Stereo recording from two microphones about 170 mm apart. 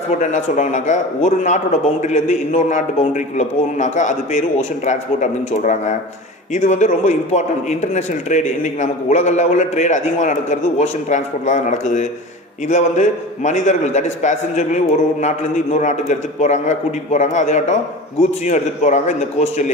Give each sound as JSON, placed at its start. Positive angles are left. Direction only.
{"t": 0.2, "sound": "a man's voice", "side_deg": 45}